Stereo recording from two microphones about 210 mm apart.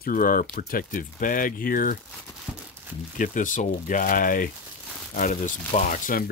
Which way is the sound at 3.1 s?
40° left (ahead or behind).